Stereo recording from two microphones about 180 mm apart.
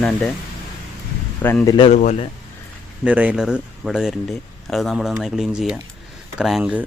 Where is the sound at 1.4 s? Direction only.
10° left (ahead or behind).